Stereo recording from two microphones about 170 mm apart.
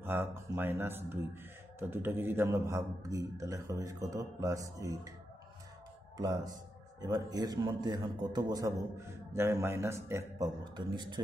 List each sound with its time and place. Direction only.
0.0 s a man's voice: 15° right (ahead or behind)
6.1 s a man's voice: 20° right (ahead or behind)
10.9 s a man's voice: 25° right (ahead or behind)